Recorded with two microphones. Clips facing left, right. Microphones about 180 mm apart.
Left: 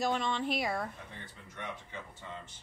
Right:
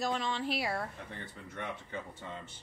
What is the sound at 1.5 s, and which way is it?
Speech, 55° right (ahead or behind).